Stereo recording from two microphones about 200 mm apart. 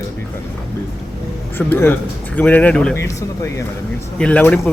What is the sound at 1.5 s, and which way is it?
Speech, 10° left (ahead or behind).